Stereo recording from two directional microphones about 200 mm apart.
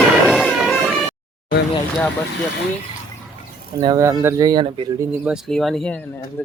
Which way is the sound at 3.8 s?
20° right (ahead or behind).